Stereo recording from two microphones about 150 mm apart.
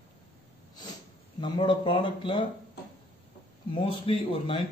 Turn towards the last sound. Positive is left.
turn(degrees=40)  # may be behind; listen again after turning